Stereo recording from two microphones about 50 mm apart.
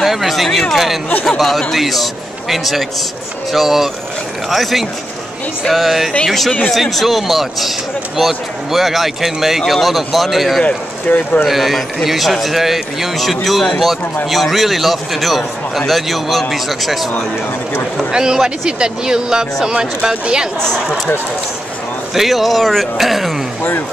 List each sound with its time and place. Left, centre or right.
0.0 s speech: centre
10.6 s speech: left
11.4 s speech: centre
18.1 s speech: centre
22.1 s speech: centre